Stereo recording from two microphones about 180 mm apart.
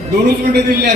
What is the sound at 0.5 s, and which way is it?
Speech, 65° right (ahead or behind).